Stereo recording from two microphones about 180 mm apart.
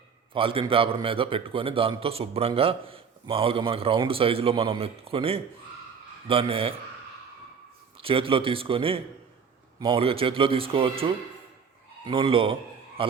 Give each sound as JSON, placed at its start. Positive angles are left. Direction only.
{"t": 0.3, "sound": "a man's voice", "side_deg": -30}
{"t": 8.0, "sound": "a man's voice", "side_deg": -30}